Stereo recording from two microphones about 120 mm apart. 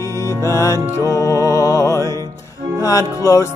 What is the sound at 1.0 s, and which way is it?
Mantra, 30° left (ahead or behind).